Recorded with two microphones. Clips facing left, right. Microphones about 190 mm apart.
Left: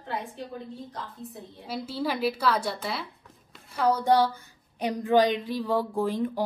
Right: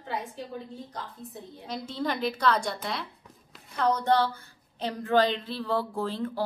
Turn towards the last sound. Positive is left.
turn(degrees=15)  # may be behind; listen again after turning